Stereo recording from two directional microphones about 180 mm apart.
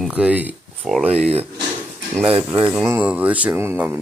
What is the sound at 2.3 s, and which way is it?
Speech, 30° right (ahead or behind).